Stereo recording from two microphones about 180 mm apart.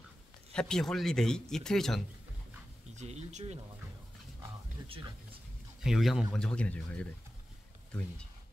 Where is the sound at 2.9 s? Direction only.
40° right (ahead or behind).